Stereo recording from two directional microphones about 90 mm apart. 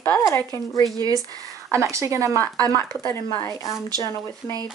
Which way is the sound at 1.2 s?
40° right (ahead or behind).